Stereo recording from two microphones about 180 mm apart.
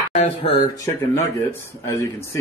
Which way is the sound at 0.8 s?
15° left (ahead or behind).